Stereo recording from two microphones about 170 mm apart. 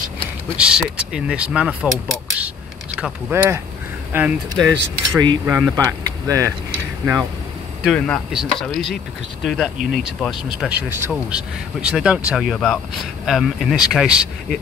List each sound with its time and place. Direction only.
0.6 s speech: 5° right (ahead or behind)
5.4 s speech: 10° right (ahead or behind)
5.9 s a sound: 20° right (ahead or behind)
7.8 s speech: centre (ahead or behind)